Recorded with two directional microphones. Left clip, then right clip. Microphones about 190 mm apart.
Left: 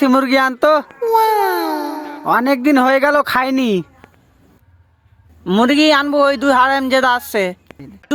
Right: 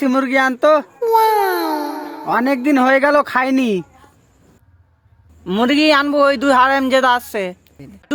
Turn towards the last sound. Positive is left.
turn(degrees=15)  # may be behind; listen again after turning